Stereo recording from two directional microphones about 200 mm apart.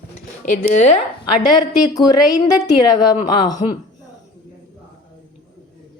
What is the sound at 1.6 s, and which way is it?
Speech, 20° left (ahead or behind).